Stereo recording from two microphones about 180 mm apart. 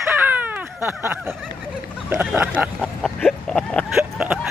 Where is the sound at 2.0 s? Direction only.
10° right (ahead or behind).